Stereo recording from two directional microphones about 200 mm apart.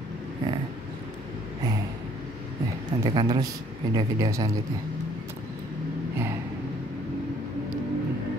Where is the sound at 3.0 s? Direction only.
20° right (ahead or behind).